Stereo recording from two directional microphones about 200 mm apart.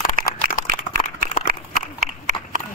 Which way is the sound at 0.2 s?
45° right (ahead or behind).